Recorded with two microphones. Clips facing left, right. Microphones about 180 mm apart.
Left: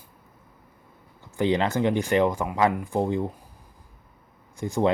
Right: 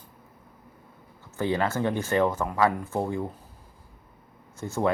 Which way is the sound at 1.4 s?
20° left (ahead or behind).